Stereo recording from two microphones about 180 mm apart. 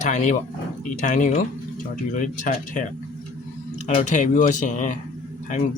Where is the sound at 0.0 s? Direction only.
40° left (ahead or behind).